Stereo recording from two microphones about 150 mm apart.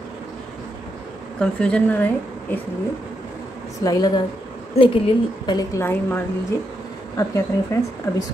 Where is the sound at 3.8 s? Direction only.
25° left (ahead or behind).